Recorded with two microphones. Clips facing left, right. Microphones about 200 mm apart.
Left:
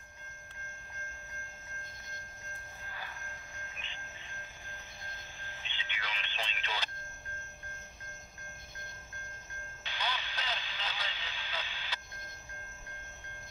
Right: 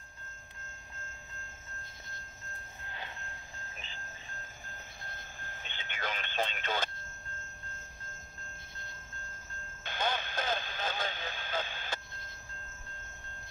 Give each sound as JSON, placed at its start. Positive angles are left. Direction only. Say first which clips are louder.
{"t": 3.6, "sound": "wind chime", "louder": "right 1 dB", "side_deg": -35}
{"t": 4.7, "sound": "a sound", "louder": "right 1 dB", "side_deg": -50}
{"t": 9.8, "sound": "radio", "louder": "right 5 dB", "side_deg": -50}